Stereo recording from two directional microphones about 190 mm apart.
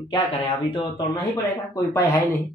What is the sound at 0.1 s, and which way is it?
Speech, 25° left (ahead or behind).